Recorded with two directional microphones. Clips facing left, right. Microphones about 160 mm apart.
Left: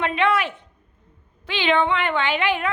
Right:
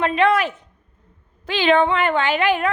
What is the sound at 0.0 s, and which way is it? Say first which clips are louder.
A woman's voice: right 4 dB; 40° right (ahead or behind).